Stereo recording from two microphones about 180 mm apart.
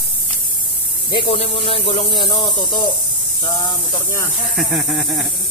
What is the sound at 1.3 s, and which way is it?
Speech, 30° left (ahead or behind).